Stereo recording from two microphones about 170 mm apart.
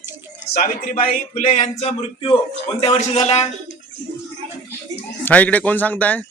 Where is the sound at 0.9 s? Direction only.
45° left (ahead or behind).